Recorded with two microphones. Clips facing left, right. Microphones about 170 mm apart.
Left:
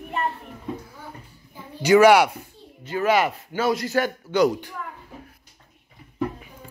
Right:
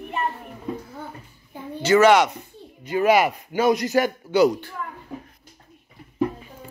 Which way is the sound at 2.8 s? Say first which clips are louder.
Right 3 dB; 15° right (ahead or behind).